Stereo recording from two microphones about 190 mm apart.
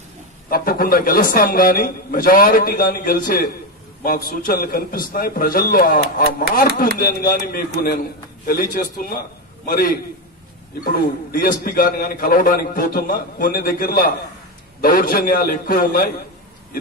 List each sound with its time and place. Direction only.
0.5 s a man's voice: 50° left (ahead or behind)